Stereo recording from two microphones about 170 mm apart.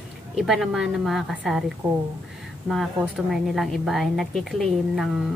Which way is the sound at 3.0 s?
Centre (ahead or behind).